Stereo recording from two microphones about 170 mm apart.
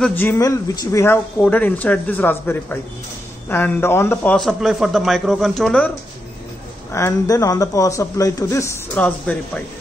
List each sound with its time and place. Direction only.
0.0 s a man's voice: 10° left (ahead or behind)
6.9 s a man's voice: 15° left (ahead or behind)
8.9 s speech: 5° left (ahead or behind)